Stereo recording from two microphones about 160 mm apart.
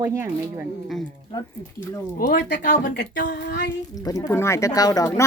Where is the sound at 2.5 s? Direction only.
55° left (ahead or behind).